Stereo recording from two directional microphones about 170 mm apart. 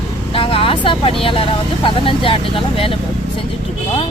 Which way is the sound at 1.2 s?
30° left (ahead or behind).